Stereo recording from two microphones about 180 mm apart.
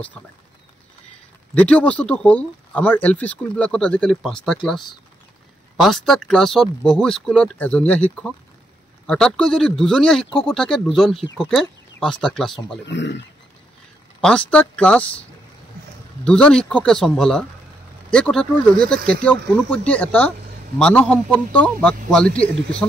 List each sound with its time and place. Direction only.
1.5 s speech: 5° left (ahead or behind)
5.8 s speech: centre (ahead or behind)
12.8 s speech: 75° left (ahead or behind)
14.2 s speech: 5° left (ahead or behind)
16.3 s speech: 5° left (ahead or behind)